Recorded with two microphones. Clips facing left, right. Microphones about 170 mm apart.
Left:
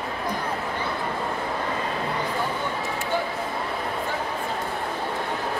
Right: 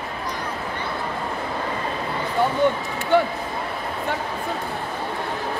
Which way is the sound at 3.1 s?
65° right (ahead or behind).